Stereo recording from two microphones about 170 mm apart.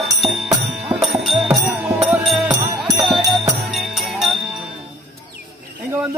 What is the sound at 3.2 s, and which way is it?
Jingle bell, 20° right (ahead or behind).